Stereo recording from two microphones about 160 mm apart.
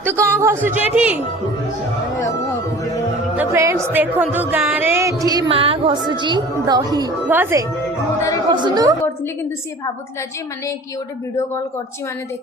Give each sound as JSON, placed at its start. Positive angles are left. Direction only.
{"t": 0.0, "sound": "speech", "side_deg": -15}
{"t": 3.3, "sound": "speech", "side_deg": -15}
{"t": 5.5, "sound": "a woman's voice", "side_deg": -35}
{"t": 7.3, "sound": "speech", "side_deg": -10}
{"t": 8.4, "sound": "a woman's voice", "side_deg": -30}